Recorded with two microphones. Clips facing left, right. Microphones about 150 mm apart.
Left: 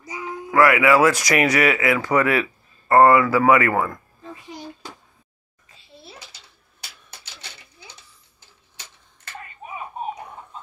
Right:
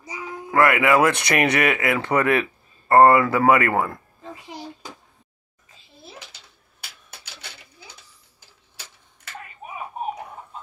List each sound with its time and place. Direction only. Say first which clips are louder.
0.5 s speech: left 2 dB; 30° right (ahead or behind)